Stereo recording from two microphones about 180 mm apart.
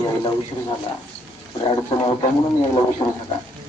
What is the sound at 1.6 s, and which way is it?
Speech, 30° left (ahead or behind).